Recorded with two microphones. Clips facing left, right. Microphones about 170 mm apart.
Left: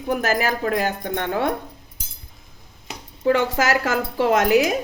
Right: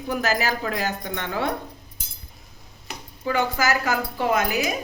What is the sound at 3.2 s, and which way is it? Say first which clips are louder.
A woman's voice: left 4 dB; 70° left (ahead or behind).